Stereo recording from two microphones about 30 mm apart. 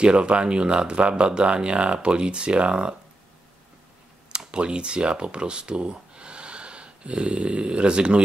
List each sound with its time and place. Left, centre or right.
0.0 s speech: right
4.5 s speech: right